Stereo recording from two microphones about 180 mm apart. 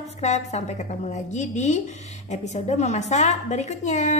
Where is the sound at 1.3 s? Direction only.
40° left (ahead or behind).